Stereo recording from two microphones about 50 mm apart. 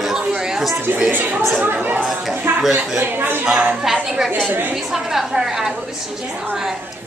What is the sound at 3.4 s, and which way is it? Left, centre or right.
Speech, centre.